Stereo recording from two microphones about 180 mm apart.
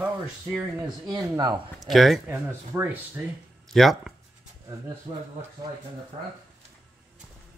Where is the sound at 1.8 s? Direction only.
Centre (ahead or behind).